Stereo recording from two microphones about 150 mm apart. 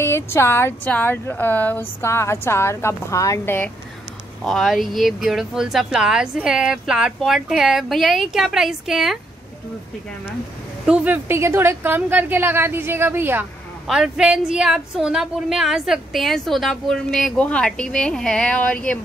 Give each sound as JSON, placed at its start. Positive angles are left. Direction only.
{"t": 0.0, "sound": "speech", "side_deg": 15}
{"t": 4.4, "sound": "a woman's voice", "side_deg": 0}
{"t": 10.9, "sound": "a woman's voice", "side_deg": -15}
{"t": 13.8, "sound": "a woman's voice", "side_deg": -5}